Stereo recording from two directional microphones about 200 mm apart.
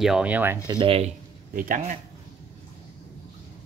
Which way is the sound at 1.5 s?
45° right (ahead or behind).